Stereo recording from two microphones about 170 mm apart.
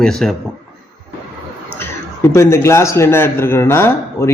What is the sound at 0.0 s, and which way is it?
Speech, 5° left (ahead or behind).